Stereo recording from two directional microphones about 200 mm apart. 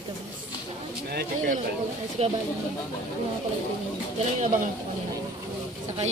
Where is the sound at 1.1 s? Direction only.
50° right (ahead or behind).